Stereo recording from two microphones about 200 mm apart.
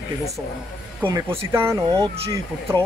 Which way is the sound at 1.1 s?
15° right (ahead or behind).